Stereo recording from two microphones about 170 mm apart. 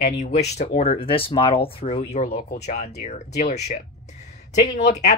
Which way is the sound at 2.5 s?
50° left (ahead or behind).